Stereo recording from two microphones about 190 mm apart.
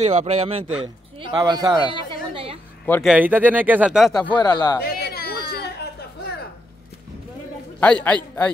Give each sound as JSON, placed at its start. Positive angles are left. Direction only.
{"t": 0.0, "sound": "speech", "side_deg": -35}
{"t": 1.4, "sound": "a sound", "side_deg": -20}
{"t": 2.8, "sound": "speech", "side_deg": 0}
{"t": 4.4, "sound": "speech", "side_deg": 20}
{"t": 4.8, "sound": "a sound", "side_deg": 55}
{"t": 7.8, "sound": "a man's voice", "side_deg": 5}